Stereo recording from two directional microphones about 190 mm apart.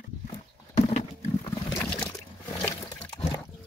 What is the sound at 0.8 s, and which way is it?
Wild animals, 40° left (ahead or behind).